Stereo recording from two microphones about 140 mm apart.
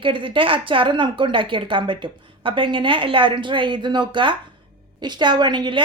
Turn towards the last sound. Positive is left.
turn(degrees=-30)  # may be behind; listen again after turning